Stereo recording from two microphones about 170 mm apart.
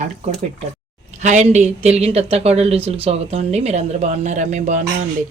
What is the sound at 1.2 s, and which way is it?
Speech, 45° right (ahead or behind).